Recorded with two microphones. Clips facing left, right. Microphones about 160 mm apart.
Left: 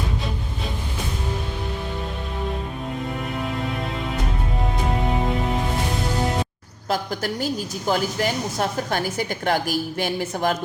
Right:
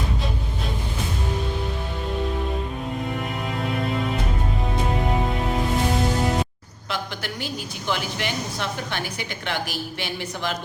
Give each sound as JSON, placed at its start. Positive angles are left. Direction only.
{"t": 6.8, "sound": "speech", "side_deg": 40}